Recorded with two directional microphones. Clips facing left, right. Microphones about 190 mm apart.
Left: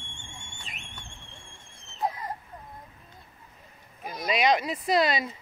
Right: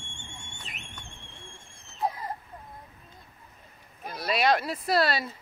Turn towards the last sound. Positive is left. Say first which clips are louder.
# left 1 dB
turn(degrees=-5)  # may be behind; listen again after turning